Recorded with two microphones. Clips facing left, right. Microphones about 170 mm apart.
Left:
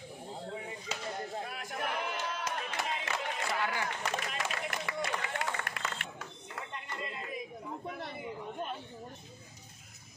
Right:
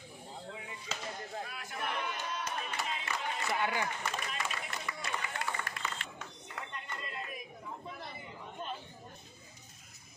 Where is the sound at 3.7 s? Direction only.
55° left (ahead or behind).